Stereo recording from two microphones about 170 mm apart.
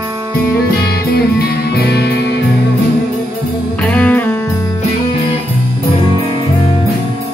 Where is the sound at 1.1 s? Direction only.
70° left (ahead or behind).